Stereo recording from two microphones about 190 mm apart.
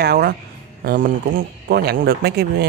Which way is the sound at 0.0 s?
55° right (ahead or behind).